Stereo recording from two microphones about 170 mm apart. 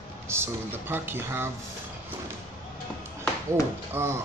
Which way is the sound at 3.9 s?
15° right (ahead or behind).